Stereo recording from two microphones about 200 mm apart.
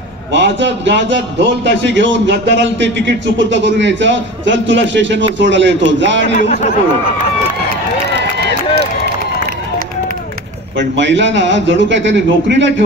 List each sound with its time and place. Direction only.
0.3 s a man's voice: 65° right (ahead or behind)
6.3 s speech: 45° left (ahead or behind)
8.2 s run: 60° right (ahead or behind)
11.0 s a man's voice: 65° right (ahead or behind)